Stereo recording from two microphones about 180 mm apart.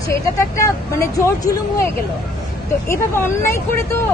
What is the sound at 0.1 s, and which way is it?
A woman's voice, 15° left (ahead or behind).